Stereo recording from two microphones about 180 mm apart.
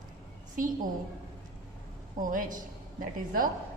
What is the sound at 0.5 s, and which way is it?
Speech, 50° right (ahead or behind).